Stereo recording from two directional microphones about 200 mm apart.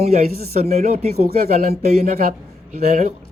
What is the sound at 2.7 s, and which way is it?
Speech, 35° right (ahead or behind).